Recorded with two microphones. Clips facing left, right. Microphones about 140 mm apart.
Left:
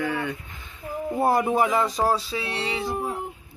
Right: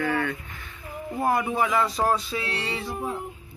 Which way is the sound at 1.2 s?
35° left (ahead or behind).